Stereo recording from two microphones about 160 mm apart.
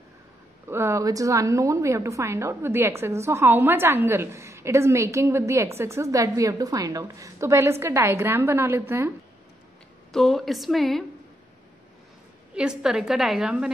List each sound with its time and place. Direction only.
0.7 s a woman's voice: 15° right (ahead or behind)
10.1 s a woman's voice: centre (ahead or behind)
12.5 s a woman's voice: 5° right (ahead or behind)